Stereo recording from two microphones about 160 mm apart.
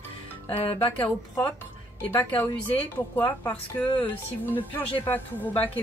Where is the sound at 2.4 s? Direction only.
15° left (ahead or behind).